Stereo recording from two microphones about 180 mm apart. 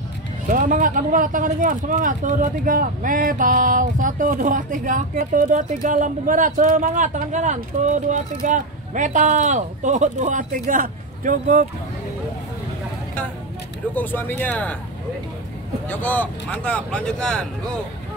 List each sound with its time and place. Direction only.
0.5 s speech: 45° right (ahead or behind)
13.9 s speech: 10° left (ahead or behind)
15.9 s speech: 10° left (ahead or behind)